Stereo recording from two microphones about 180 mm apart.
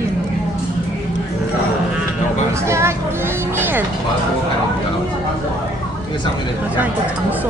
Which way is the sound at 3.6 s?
10° right (ahead or behind).